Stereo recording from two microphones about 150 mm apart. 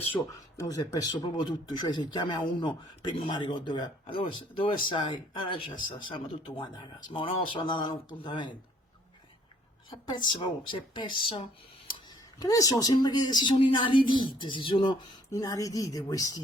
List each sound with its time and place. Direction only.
0.1 s speech: 20° left (ahead or behind)
9.9 s speech: 30° left (ahead or behind)
12.4 s speech: 25° left (ahead or behind)
15.3 s speech: 25° left (ahead or behind)